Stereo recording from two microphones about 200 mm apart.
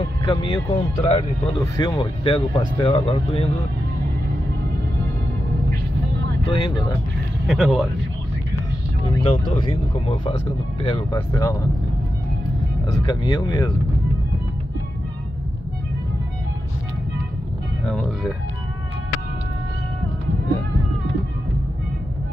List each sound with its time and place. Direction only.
0.2 s speech: 20° left (ahead or behind)
6.6 s speech: 20° left (ahead or behind)
7.4 s speech: 5° right (ahead or behind)
9.2 s speech: 30° left (ahead or behind)
13.2 s speech: 20° left (ahead or behind)
17.8 s speech: centre (ahead or behind)